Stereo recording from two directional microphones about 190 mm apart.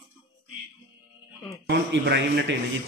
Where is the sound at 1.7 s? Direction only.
70° right (ahead or behind).